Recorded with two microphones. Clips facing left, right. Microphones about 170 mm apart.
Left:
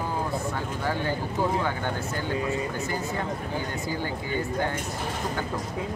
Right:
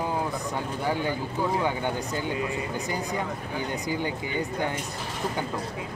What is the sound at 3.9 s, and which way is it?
Speech, 15° right (ahead or behind).